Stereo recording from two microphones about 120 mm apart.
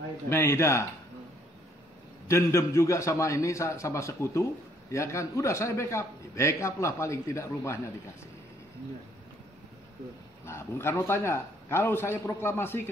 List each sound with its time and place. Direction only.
0.3 s a man's voice: 20° left (ahead or behind)
2.2 s a man's voice: 25° left (ahead or behind)
10.4 s a man's voice: 20° left (ahead or behind)